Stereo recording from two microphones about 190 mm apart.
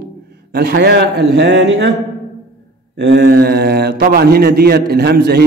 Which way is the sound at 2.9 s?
60° right (ahead or behind).